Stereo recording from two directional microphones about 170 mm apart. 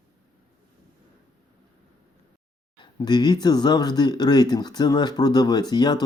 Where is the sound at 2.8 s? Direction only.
25° left (ahead or behind).